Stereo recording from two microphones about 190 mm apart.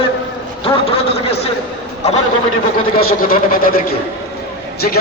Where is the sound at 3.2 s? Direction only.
50° left (ahead or behind).